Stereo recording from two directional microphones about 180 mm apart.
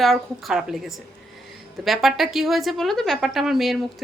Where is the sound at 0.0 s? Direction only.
Centre (ahead or behind).